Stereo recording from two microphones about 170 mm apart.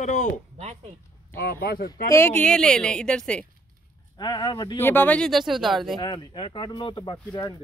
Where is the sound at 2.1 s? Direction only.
10° left (ahead or behind).